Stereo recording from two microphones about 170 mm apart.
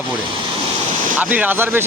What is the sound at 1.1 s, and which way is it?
Speech, 10° right (ahead or behind).